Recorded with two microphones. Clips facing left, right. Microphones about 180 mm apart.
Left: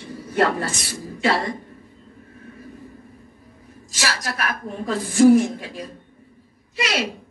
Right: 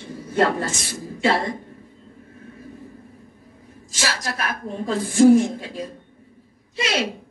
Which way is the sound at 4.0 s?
25° right (ahead or behind).